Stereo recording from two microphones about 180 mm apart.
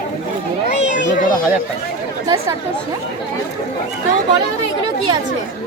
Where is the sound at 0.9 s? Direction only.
45° left (ahead or behind).